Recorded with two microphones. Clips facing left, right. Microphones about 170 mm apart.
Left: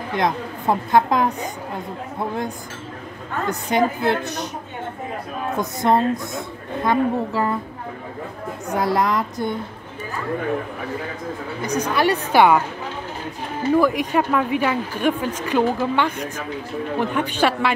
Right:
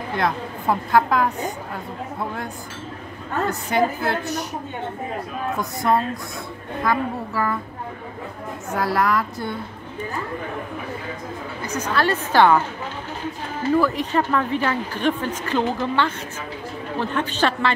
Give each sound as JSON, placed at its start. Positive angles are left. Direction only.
{"t": 0.1, "sound": "a woman's voice", "side_deg": 20}
{"t": 3.4, "sound": "a woman's voice", "side_deg": 20}
{"t": 5.6, "sound": "a woman's voice", "side_deg": 20}
{"t": 8.7, "sound": "a woman's voice", "side_deg": 20}
{"t": 11.6, "sound": "speech", "side_deg": 15}
{"t": 13.7, "sound": "speech", "side_deg": 10}